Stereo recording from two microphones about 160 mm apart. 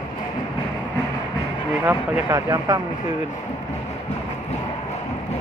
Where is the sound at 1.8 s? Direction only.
20° right (ahead or behind).